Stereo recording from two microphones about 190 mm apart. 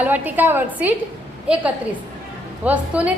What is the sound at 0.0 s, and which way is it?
Speech, 10° right (ahead or behind).